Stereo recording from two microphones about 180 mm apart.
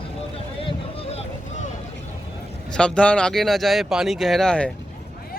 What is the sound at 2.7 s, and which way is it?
Speech, 5° left (ahead or behind).